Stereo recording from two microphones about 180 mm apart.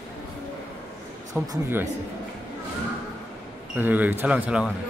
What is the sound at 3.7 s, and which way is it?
Speech, 10° right (ahead or behind).